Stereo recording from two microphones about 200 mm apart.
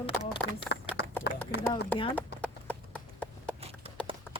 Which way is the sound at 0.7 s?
55° left (ahead or behind).